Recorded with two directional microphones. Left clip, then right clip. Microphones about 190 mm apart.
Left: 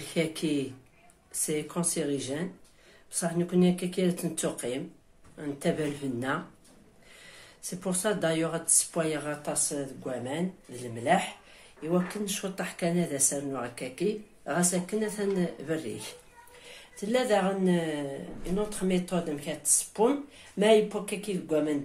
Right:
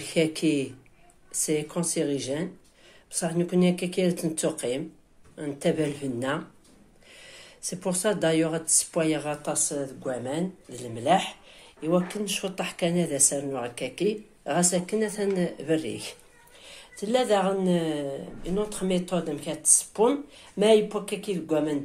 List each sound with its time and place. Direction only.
0.0 s a woman's voice: 30° right (ahead or behind)